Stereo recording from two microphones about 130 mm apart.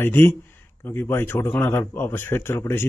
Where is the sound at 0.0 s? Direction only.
15° left (ahead or behind).